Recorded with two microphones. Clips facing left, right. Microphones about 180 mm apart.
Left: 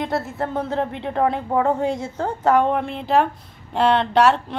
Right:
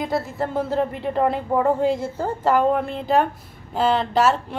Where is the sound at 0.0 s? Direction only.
Centre (ahead or behind).